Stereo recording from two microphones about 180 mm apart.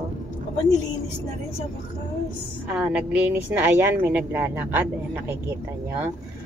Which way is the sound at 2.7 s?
5° right (ahead or behind).